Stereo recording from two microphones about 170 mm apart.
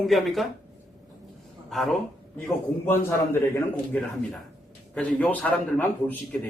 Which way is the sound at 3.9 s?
10° left (ahead or behind).